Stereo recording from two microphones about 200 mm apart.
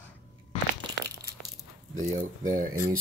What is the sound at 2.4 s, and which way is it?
Speech, 40° right (ahead or behind).